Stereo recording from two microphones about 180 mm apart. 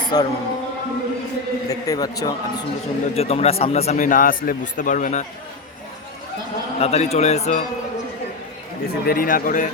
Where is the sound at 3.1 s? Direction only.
35° left (ahead or behind).